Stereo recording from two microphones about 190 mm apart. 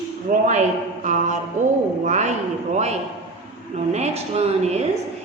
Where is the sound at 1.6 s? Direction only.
40° right (ahead or behind).